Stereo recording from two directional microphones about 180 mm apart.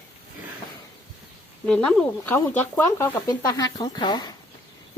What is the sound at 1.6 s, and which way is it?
A woman's voice, 5° left (ahead or behind).